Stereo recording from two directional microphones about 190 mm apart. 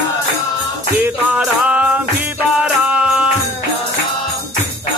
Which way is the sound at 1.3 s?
5° right (ahead or behind).